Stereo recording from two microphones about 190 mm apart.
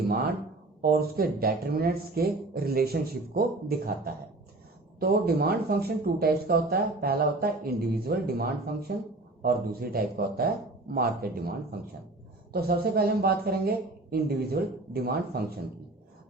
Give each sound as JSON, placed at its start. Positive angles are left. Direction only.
{"t": 0.8, "sound": "speech", "side_deg": -55}
{"t": 12.5, "sound": "speech", "side_deg": -55}